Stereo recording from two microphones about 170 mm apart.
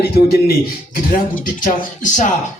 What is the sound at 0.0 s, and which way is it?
Speech, 65° left (ahead or behind).